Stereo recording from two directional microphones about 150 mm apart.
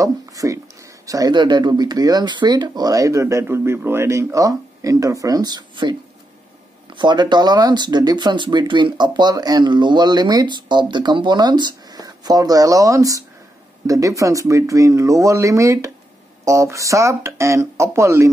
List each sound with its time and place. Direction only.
0.0 s speech: 20° right (ahead or behind)